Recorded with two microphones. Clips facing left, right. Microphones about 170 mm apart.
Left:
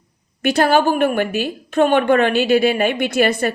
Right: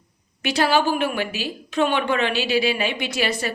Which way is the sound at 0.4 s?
50° left (ahead or behind).